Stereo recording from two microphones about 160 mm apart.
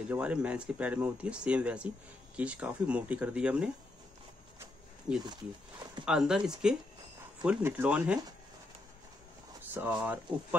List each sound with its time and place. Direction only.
0.1 s speech: 10° right (ahead or behind)
5.1 s speech: 5° right (ahead or behind)
9.8 s speech: 10° right (ahead or behind)